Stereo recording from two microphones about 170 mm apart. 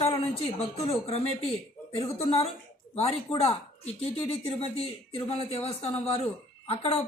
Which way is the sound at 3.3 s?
35° left (ahead or behind).